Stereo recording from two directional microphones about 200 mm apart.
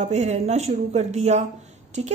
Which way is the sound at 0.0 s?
35° right (ahead or behind).